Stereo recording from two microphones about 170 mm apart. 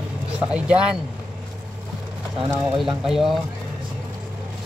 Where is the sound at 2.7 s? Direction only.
Centre (ahead or behind).